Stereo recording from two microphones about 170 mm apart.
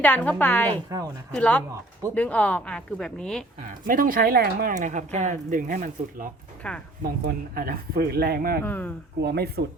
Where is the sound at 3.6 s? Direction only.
55° right (ahead or behind).